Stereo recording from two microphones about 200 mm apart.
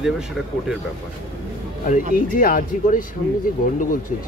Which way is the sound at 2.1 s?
45° left (ahead or behind).